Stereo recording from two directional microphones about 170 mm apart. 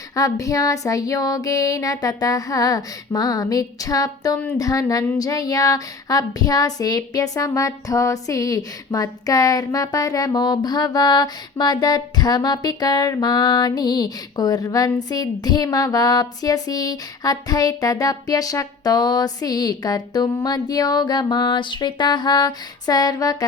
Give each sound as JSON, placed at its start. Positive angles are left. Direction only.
{"t": 0.2, "sound": "child singing", "side_deg": 20}